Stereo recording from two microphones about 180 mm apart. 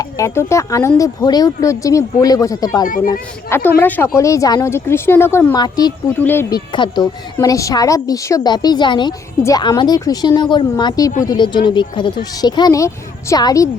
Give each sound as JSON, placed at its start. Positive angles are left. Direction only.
{"t": 0.0, "sound": "speech", "side_deg": 15}
{"t": 2.8, "sound": "speech", "side_deg": 50}
{"t": 3.1, "sound": "a woman's voice", "side_deg": 15}
{"t": 6.7, "sound": "a woman's voice", "side_deg": 25}